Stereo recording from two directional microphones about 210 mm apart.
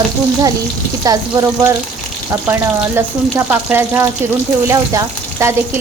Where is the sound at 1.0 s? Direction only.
15° right (ahead or behind).